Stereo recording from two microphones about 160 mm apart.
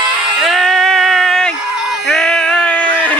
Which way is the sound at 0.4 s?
Centre (ahead or behind).